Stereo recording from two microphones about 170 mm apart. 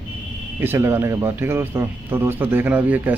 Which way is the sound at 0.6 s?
15° right (ahead or behind).